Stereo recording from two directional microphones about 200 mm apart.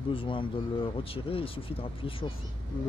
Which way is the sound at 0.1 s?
25° left (ahead or behind).